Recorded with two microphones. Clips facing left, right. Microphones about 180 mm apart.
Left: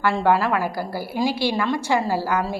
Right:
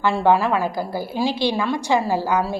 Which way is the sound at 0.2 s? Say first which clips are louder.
Right 4 dB; 15° right (ahead or behind).